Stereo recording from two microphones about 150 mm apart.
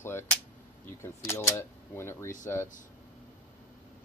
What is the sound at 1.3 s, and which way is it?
Speech, 20° left (ahead or behind).